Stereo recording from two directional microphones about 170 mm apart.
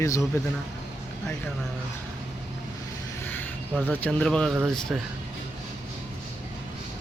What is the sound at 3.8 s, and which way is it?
Speech, 5° left (ahead or behind).